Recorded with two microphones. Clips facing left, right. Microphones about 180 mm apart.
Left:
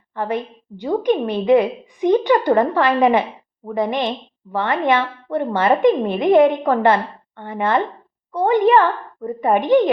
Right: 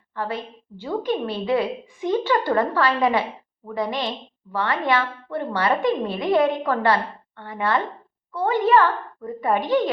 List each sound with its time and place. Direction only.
0.1 s a woman's voice: 20° left (ahead or behind)